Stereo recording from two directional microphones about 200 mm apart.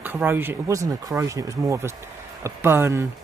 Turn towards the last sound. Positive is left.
turn(degrees=-10)  # may be behind; listen again after turning